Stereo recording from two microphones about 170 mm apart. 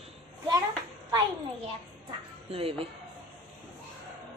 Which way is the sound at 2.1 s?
35° right (ahead or behind).